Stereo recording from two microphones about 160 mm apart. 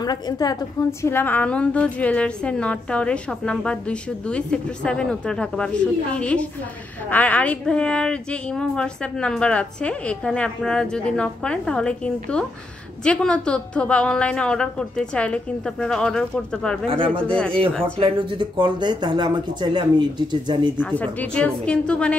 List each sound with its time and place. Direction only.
0.0 s a woman's voice: 25° left (ahead or behind)
1.0 s a woman's voice: 10° left (ahead or behind)
16.9 s speech: 35° right (ahead or behind)
17.3 s a woman's voice: 5° left (ahead or behind)
17.9 s speech: 35° right (ahead or behind)
20.8 s a woman's voice: 10° left (ahead or behind)